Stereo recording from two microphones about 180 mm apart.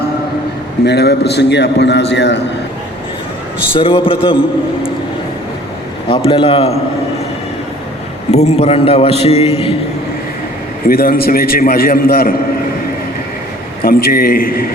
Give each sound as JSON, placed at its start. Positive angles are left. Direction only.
{"t": 0.9, "sound": "a man's voice", "side_deg": 65}
{"t": 3.8, "sound": "a man's voice", "side_deg": 30}
{"t": 6.1, "sound": "a man's voice", "side_deg": 30}
{"t": 8.3, "sound": "a man's voice", "side_deg": 35}
{"t": 10.8, "sound": "a man's voice", "side_deg": 55}
{"t": 13.8, "sound": "a man's voice", "side_deg": 55}